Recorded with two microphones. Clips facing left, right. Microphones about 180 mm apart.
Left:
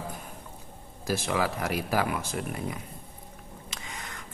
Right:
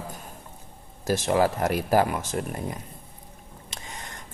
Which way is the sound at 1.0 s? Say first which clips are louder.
Right 6 dB; 45° right (ahead or behind).